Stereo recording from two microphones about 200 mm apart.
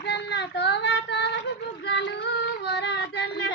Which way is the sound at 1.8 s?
60° left (ahead or behind).